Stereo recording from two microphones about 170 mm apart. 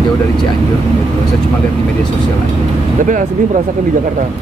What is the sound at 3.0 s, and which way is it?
Speech, 50° right (ahead or behind).